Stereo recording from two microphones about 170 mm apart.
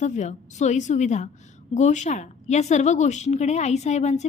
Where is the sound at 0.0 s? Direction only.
45° left (ahead or behind).